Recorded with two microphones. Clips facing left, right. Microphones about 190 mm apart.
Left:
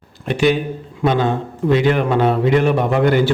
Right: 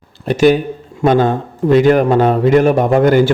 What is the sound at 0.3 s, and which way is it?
A man's voice, 45° right (ahead or behind).